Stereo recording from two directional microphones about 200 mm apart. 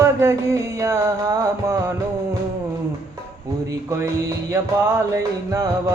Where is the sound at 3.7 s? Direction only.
15° right (ahead or behind).